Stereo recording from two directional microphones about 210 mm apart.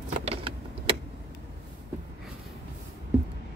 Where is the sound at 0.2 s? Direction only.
25° right (ahead or behind).